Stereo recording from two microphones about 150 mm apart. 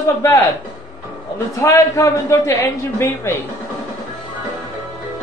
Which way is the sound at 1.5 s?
20° left (ahead or behind).